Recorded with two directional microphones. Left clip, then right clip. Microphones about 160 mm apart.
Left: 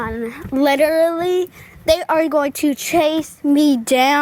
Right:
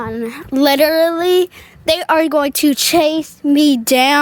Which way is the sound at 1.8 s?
25° right (ahead or behind).